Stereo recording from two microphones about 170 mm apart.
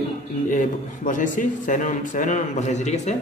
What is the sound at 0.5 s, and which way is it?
A man's voice, 50° left (ahead or behind).